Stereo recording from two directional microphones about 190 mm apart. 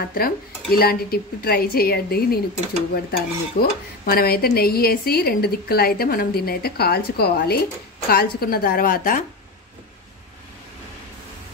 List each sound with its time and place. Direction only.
0.1 s dishes: 50° left (ahead or behind)